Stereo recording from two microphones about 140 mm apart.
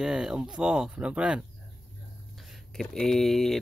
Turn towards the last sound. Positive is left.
turn(degrees=0)  # may be behind; listen again after turning